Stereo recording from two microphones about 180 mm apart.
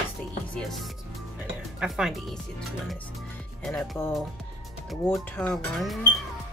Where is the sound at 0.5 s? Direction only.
Centre (ahead or behind).